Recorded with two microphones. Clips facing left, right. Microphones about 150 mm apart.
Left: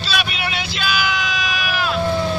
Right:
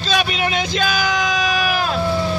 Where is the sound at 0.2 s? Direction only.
35° right (ahead or behind).